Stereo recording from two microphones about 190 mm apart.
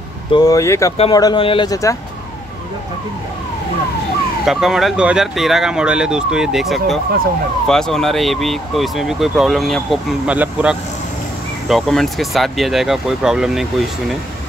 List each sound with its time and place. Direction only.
0.3 s speech: 20° left (ahead or behind)
4.5 s speech: centre (ahead or behind)